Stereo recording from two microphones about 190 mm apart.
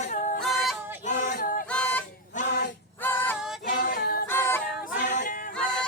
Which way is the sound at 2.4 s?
65° left (ahead or behind).